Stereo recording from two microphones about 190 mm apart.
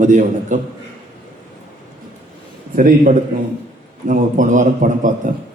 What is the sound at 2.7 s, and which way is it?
Speech, 45° right (ahead or behind).